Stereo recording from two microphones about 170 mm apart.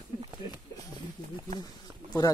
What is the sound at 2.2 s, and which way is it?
Speech, 25° left (ahead or behind).